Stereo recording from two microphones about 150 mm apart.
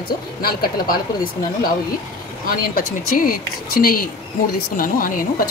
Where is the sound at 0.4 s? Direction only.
85° left.